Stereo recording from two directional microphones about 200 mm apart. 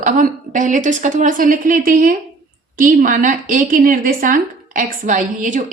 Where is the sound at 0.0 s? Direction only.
40° right (ahead or behind).